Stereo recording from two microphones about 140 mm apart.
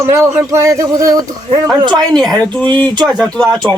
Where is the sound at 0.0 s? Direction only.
20° right (ahead or behind).